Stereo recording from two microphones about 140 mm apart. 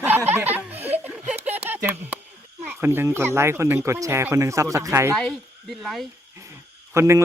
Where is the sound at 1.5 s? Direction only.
15° right (ahead or behind).